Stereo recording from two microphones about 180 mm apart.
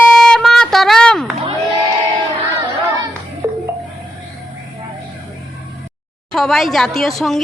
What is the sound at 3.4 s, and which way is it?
Music, 15° right (ahead or behind).